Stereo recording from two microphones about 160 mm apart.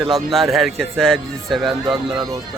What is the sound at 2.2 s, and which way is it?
Speech, 25° right (ahead or behind).